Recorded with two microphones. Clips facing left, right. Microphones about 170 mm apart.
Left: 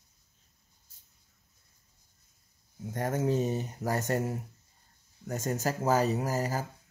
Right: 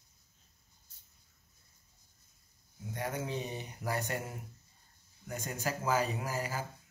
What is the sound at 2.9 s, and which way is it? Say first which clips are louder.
Speech: left 8 dB; 45° left (ahead or behind).